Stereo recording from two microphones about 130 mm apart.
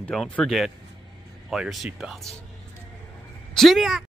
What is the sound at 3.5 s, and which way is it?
Speech, centre (ahead or behind).